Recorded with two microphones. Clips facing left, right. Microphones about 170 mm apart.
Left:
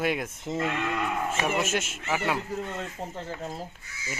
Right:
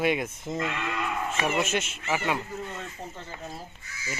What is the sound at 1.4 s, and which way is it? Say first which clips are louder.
Speech: right 2 dB; 5° left (ahead or behind).